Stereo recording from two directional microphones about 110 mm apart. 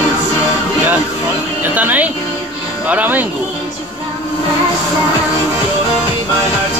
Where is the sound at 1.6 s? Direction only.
15° right (ahead or behind).